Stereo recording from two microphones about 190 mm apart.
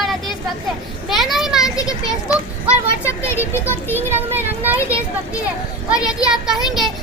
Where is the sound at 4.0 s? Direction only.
10° right (ahead or behind).